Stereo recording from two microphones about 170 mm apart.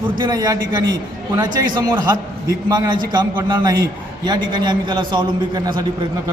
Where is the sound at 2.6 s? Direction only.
25° right (ahead or behind).